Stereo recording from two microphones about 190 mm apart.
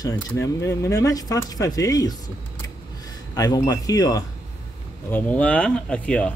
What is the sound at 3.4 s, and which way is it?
Speech, 20° left (ahead or behind).